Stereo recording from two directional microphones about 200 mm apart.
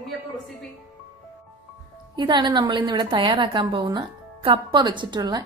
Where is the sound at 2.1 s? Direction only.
20° right (ahead or behind).